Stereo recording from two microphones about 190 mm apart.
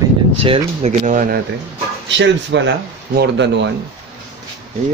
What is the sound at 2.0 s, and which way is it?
Speech, 70° right (ahead or behind).